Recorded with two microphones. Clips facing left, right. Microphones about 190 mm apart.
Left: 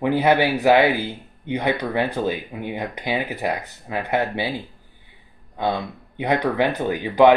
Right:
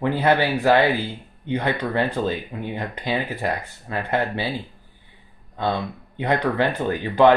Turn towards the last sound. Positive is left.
turn(degrees=15)  # may be behind; listen again after turning